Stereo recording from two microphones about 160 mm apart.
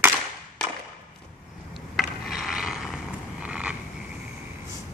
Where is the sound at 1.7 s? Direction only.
Centre (ahead or behind).